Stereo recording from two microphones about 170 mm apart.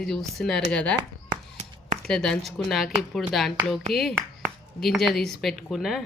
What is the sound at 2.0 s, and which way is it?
A woman's voice, 5° left (ahead or behind).